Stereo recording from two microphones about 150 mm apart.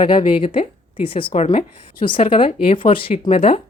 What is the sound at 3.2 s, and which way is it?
Speech, 50° left (ahead or behind).